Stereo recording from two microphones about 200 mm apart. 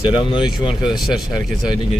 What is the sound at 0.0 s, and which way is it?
Speech, 25° left (ahead or behind).